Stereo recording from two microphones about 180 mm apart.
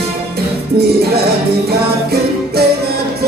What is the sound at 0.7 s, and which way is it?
Music, 60° right (ahead or behind).